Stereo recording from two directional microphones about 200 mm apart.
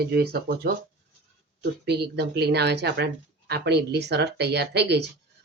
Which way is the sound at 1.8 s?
55° right (ahead or behind).